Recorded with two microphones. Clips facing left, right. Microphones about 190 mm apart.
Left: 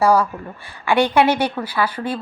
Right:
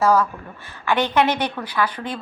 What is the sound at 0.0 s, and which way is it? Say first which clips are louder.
A woman's voice: left 2 dB; 15° left (ahead or behind).